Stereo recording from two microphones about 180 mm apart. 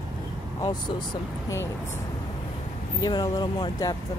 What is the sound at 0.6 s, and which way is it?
Speech, 25° left (ahead or behind).